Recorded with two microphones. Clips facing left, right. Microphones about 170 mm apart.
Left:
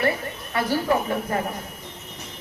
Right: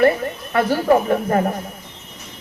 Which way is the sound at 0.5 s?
45° right (ahead or behind).